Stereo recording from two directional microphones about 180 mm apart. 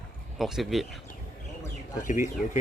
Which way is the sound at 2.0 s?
45° left (ahead or behind).